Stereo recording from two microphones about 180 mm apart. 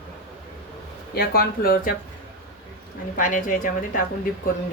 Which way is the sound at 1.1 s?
55° left (ahead or behind).